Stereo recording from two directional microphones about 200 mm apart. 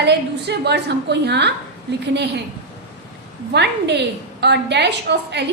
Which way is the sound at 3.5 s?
60° right (ahead or behind).